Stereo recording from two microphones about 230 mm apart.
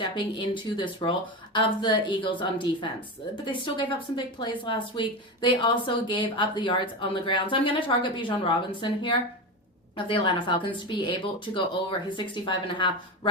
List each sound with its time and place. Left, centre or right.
0.0 s speech: left